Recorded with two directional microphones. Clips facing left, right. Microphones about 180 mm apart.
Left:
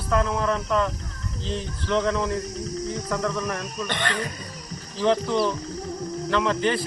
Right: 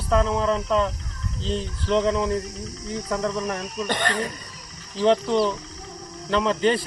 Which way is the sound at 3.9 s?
40° right (ahead or behind).